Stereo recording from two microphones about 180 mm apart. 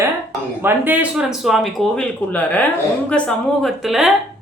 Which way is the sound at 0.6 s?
10° right (ahead or behind).